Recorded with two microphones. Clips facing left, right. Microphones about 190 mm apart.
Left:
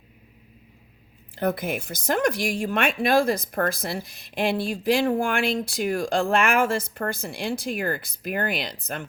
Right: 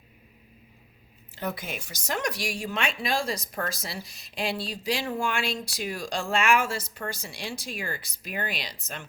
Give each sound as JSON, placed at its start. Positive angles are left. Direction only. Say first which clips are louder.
{"t": 1.4, "sound": "speech", "louder": "left 8 dB", "side_deg": 55}